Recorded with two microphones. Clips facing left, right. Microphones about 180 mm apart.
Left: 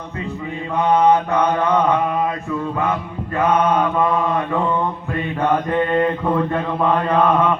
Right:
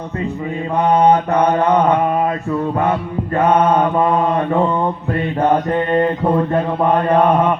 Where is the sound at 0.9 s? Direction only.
35° right (ahead or behind).